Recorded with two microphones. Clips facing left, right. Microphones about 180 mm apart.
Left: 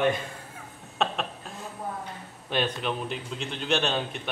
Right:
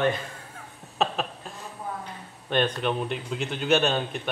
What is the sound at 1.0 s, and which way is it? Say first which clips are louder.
Chuckle: right 2 dB; centre (ahead or behind).